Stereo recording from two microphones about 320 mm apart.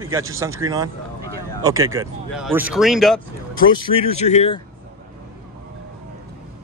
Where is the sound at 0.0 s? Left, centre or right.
Centre.